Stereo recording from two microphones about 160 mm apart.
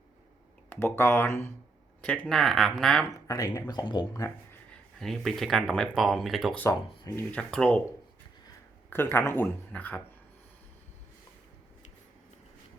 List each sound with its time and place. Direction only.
0.7 s speech: 15° left (ahead or behind)
3.1 s speech: 20° left (ahead or behind)
4.9 s speech: centre (ahead or behind)
6.6 s speech: 20° left (ahead or behind)
8.9 s speech: 15° left (ahead or behind)